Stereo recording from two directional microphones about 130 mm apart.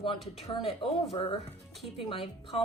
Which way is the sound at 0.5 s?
45° left (ahead or behind).